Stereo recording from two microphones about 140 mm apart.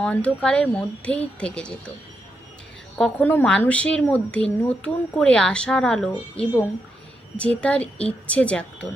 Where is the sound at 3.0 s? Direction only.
5° left (ahead or behind).